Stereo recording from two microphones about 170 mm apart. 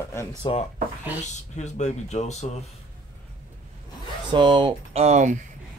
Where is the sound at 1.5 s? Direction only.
45° left (ahead or behind).